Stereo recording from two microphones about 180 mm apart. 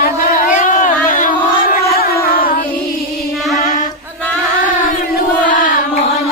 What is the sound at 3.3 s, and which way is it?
Mantra, centre (ahead or behind).